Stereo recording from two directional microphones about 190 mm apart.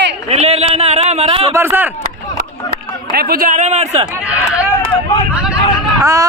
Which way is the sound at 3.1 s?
50° right (ahead or behind).